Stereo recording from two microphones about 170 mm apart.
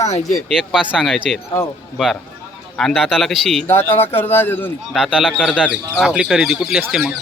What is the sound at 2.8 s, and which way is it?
Speech, centre (ahead or behind).